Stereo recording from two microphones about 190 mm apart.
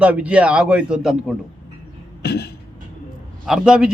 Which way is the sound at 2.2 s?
55° left (ahead or behind).